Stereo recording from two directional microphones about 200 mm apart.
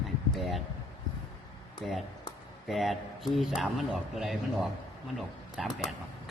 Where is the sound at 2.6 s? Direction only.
Centre (ahead or behind).